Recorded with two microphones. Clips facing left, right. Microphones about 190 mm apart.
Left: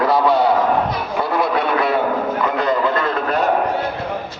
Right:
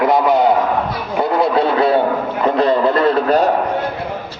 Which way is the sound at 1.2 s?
25° right (ahead or behind).